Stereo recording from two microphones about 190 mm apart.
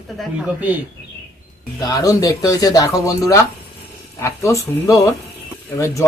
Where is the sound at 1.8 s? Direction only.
20° left (ahead or behind).